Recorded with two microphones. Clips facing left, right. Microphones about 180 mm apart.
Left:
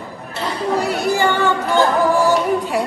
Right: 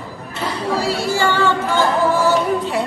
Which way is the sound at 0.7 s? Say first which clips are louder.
Left 2 dB; 20° left (ahead or behind).